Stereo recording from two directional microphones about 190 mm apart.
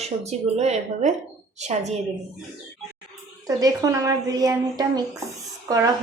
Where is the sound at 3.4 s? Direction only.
20° right (ahead or behind).